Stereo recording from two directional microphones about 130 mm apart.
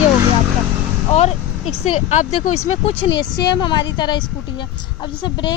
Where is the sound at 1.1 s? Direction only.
55° left (ahead or behind).